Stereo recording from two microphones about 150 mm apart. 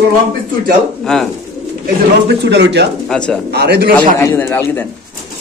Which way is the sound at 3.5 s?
90° right.